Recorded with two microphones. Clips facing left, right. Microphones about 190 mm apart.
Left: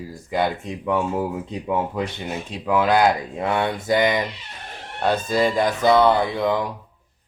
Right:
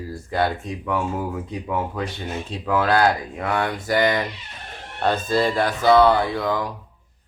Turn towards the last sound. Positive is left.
turn(degrees=20)  # may be behind; listen again after turning